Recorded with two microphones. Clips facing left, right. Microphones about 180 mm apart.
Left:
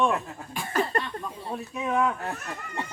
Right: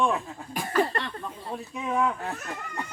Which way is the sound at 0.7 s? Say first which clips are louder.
Right 1 dB; 45° left (ahead or behind).